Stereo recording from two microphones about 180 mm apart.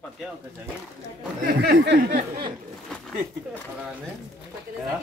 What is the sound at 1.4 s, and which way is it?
Speech, 65° right (ahead or behind).